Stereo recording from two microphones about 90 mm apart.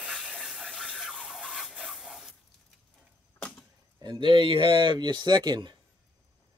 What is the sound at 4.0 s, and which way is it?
Speech, 65° right (ahead or behind).